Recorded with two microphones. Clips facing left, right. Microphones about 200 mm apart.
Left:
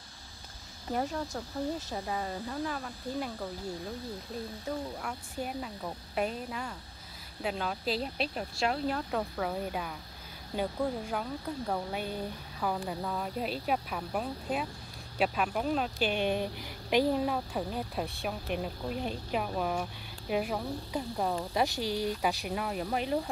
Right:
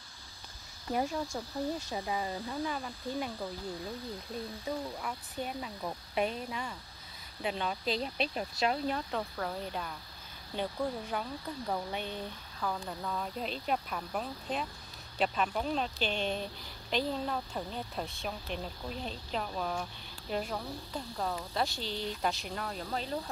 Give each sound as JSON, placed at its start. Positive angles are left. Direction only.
{"t": 1.3, "sound": "speech", "side_deg": 0}
{"t": 5.4, "sound": "speech", "side_deg": 5}